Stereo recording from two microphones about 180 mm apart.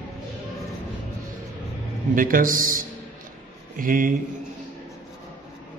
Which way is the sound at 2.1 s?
50° right (ahead or behind).